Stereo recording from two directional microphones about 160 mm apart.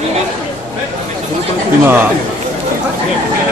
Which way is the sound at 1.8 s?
15° right (ahead or behind).